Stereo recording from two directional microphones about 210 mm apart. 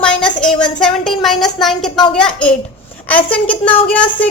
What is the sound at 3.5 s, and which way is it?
Speech, 25° left (ahead or behind).